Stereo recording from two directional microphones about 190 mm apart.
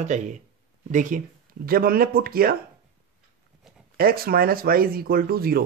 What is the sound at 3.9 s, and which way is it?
Speech, 50° right (ahead or behind).